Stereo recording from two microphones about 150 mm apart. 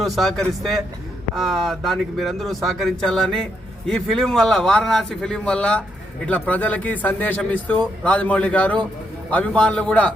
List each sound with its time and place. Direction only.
0.0 s a man's voice: centre (ahead or behind)